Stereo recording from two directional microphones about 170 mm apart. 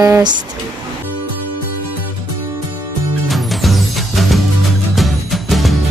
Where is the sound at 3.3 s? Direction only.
Centre (ahead or behind).